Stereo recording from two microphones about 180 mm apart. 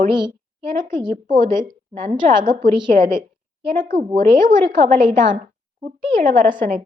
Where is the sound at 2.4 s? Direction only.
25° right (ahead or behind).